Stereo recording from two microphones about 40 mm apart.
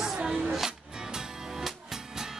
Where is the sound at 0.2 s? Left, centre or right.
Right.